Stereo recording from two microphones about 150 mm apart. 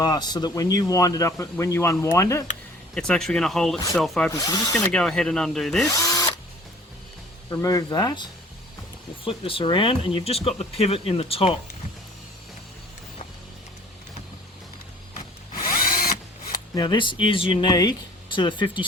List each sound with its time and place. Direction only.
0.0 s speech: 25° left (ahead or behind)
2.9 s speech: 5° left (ahead or behind)
4.3 s speech: 25° left (ahead or behind)
4.9 s speech: 5° left (ahead or behind)
5.9 s drill: 20° left (ahead or behind)
7.5 s speech: 20° left (ahead or behind); by 11.5 s 40° left (ahead or behind)
15.5 s drill: 70° left (ahead or behind)
16.5 s speech: 30° left (ahead or behind)